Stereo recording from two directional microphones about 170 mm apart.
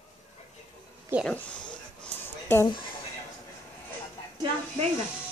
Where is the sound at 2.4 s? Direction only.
15° left (ahead or behind).